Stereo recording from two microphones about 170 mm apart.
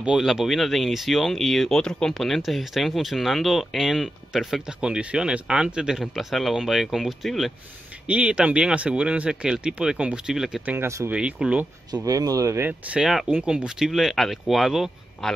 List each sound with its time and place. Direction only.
0.0 s speech: centre (ahead or behind)
11.9 s speech: 20° right (ahead or behind); by 15.3 s centre (ahead or behind)